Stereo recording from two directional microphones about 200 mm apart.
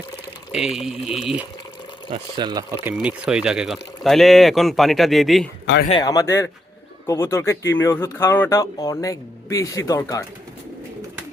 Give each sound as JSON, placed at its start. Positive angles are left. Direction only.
{"t": 0.5, "sound": "speech", "side_deg": 0}
{"t": 2.0, "sound": "speech", "side_deg": -20}
{"t": 2.8, "sound": "speech", "side_deg": -5}
{"t": 5.9, "sound": "speech", "side_deg": 20}